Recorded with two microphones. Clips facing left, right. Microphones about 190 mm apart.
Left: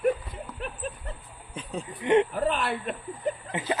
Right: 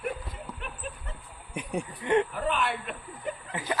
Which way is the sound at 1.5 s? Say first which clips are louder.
Right 3 dB; 15° right (ahead or behind).